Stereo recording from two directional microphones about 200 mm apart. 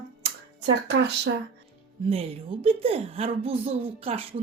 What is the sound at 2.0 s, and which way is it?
A woman's voice, 30° right (ahead or behind).